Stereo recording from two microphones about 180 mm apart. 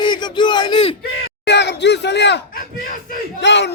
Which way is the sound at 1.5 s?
75° left (ahead or behind).